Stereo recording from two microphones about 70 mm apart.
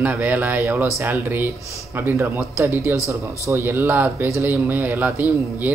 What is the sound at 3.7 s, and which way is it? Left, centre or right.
Speech, right.